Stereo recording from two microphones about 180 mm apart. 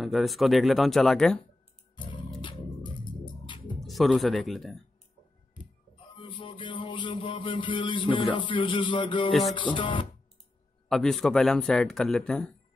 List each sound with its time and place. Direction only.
0.0 s speech: centre (ahead or behind)
2.0 s music: 25° left (ahead or behind)
2.4 s a sound: 25° left (ahead or behind)
3.4 s music: 25° left (ahead or behind)
3.8 s speech: centre (ahead or behind)
6.1 s a sound: 30° left (ahead or behind)
9.4 s music: 35° left (ahead or behind)
9.8 s speech: 30° left (ahead or behind)
10.9 s speech: centre (ahead or behind)